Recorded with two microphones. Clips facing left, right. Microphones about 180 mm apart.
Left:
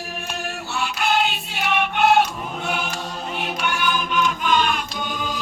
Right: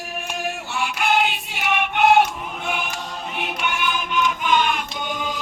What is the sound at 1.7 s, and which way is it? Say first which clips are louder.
Choir: right 1 dB; 15° right (ahead or behind).